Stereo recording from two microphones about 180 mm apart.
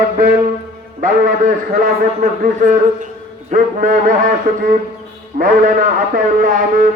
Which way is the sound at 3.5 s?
45° right (ahead or behind).